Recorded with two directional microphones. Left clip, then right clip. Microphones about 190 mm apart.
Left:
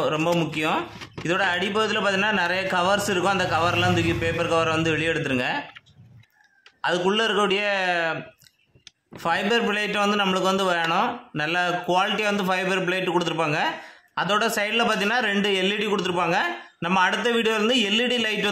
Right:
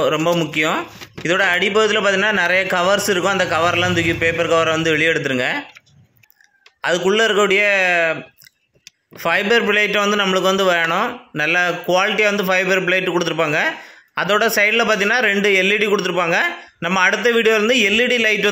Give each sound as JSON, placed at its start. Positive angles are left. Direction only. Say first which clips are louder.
{"t": 0.0, "sound": "speech", "louder": "right 6 dB", "side_deg": -20}
{"t": 6.8, "sound": "speech", "louder": "right 6 dB", "side_deg": -15}
{"t": 9.2, "sound": "speech", "louder": "right 6 dB", "side_deg": -20}